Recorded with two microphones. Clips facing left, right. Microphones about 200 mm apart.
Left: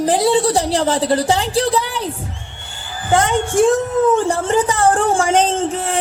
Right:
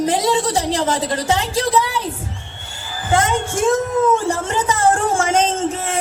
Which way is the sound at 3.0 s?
35° left (ahead or behind).